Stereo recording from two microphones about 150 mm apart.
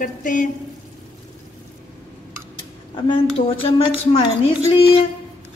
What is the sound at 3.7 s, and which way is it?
Speech, 35° left (ahead or behind).